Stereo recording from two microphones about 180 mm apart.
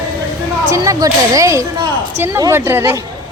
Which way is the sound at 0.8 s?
20° right (ahead or behind).